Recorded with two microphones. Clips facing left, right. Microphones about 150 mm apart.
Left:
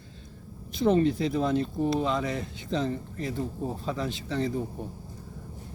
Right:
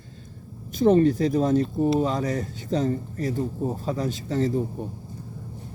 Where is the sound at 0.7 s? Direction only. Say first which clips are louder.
Right 5 dB; 45° right (ahead or behind).